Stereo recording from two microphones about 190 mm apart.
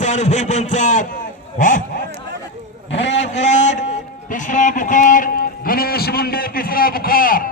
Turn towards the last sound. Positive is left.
turn(degrees=50)  # may be behind; listen again after turning